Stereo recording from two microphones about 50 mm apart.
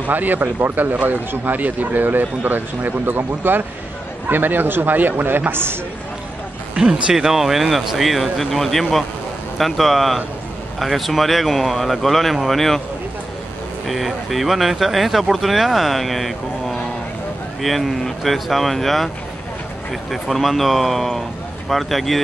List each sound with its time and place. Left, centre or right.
0.0 s a man's voice: right
6.7 s speech: centre
13.8 s speech: centre